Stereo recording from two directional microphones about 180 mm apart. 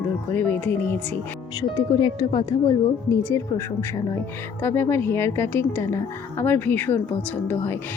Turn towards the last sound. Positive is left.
turn(degrees=15)  # may be behind; listen again after turning